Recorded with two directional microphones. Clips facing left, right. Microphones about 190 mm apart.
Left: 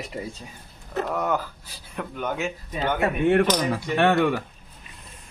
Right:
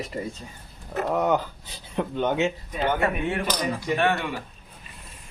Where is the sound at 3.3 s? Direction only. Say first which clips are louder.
Left 7 dB; 65° left (ahead or behind).